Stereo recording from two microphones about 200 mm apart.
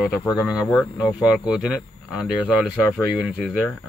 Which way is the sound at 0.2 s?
15° left (ahead or behind).